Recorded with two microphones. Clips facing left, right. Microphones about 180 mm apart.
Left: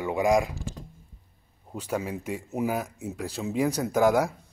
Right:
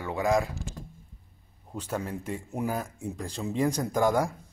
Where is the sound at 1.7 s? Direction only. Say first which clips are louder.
Left 2 dB; 10° left (ahead or behind).